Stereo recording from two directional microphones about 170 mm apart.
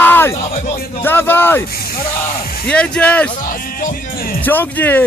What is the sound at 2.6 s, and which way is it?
Speech, 5° left (ahead or behind).